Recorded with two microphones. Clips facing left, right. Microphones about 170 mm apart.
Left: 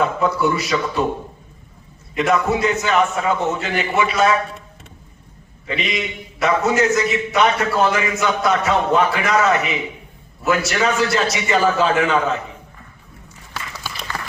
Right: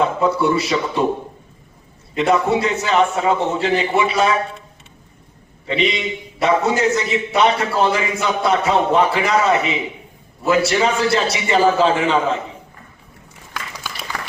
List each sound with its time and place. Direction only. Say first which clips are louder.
0.0 s a man's voice: right 1 dB; 25° right (ahead or behind)
2.1 s a man's voice: right 2 dB; 30° right (ahead or behind)
5.6 s a man's voice: right 4 dB; 30° right (ahead or behind)